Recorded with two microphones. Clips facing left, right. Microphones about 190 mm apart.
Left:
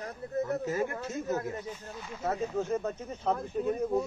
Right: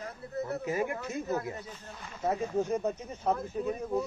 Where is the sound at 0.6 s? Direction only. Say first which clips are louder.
Even; 15° right (ahead or behind).